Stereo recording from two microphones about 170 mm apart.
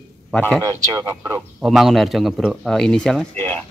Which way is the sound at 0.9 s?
25° right (ahead or behind).